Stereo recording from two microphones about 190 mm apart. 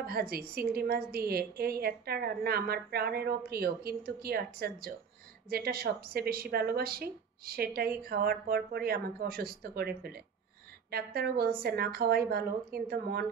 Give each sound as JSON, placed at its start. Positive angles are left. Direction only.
{"t": 0.0, "sound": "a woman's voice", "side_deg": -55}